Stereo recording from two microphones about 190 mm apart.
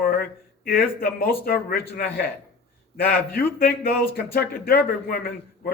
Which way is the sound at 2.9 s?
50° left (ahead or behind).